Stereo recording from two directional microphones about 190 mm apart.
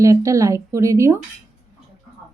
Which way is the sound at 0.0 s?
15° right (ahead or behind).